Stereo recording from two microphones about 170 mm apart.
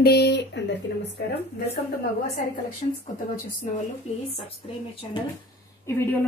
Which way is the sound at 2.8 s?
45° left (ahead or behind).